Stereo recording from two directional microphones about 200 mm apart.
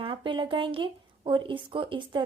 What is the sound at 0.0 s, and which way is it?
A woman's voice, 25° right (ahead or behind).